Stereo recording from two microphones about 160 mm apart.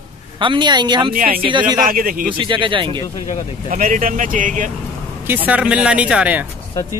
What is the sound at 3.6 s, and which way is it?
Speech, 55° right (ahead or behind).